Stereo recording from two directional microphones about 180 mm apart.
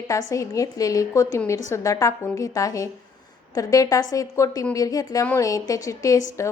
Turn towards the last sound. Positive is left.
turn(degrees=15)  # may be behind; listen again after turning